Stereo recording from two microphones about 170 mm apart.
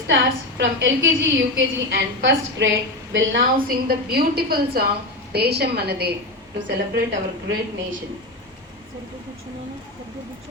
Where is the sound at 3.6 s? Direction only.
60° right (ahead or behind).